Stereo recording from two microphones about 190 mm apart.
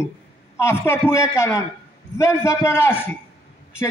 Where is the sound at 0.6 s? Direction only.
15° left (ahead or behind).